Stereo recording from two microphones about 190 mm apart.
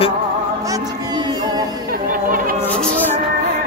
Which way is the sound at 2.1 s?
50° right (ahead or behind).